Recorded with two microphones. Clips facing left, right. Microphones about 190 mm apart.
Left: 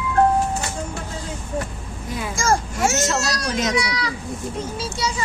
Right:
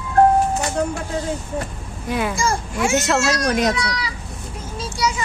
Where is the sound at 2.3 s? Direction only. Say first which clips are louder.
Left 1 dB; 45° left (ahead or behind).